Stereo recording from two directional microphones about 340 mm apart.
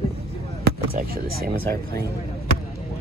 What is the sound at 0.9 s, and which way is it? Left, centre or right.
Speech, right.